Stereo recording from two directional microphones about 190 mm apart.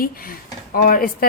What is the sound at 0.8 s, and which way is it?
Speech, 50° left (ahead or behind).